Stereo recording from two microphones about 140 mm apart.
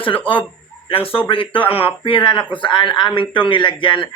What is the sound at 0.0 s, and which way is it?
A man's voice, 40° left (ahead or behind).